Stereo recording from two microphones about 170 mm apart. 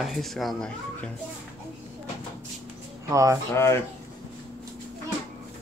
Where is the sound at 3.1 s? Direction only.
20° right (ahead or behind).